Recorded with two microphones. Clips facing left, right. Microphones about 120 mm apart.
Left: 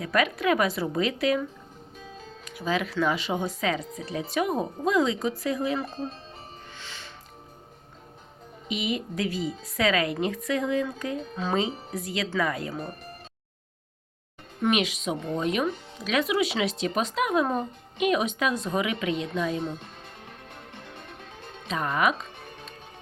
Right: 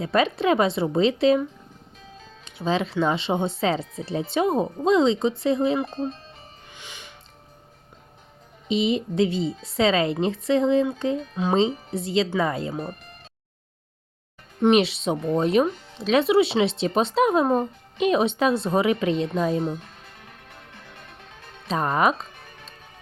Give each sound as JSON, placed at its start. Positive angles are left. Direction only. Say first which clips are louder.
{"t": 0.0, "sound": "speech", "louder": "right 4 dB", "side_deg": -30}
{"t": 6.7, "sound": "music", "louder": "even", "side_deg": -15}
{"t": 8.6, "sound": "speech", "louder": "right 7 dB", "side_deg": -30}
{"t": 14.6, "sound": "speech", "louder": "right 7 dB", "side_deg": -30}
{"t": 21.7, "sound": "music", "louder": "right 4 dB", "side_deg": -35}